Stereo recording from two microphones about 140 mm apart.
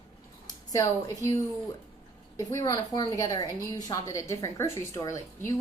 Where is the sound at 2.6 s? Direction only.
25° left (ahead or behind).